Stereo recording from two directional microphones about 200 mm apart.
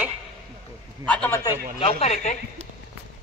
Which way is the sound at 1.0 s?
5° left (ahead or behind).